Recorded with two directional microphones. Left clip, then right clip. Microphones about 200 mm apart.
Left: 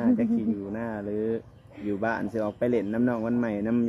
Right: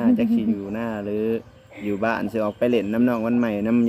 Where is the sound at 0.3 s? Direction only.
10° right (ahead or behind).